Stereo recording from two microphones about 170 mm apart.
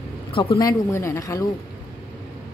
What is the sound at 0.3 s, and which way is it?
A woman's voice, 30° left (ahead or behind).